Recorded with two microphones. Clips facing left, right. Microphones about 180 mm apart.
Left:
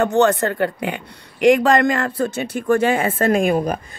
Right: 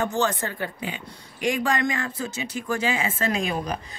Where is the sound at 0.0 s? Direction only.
65° left (ahead or behind).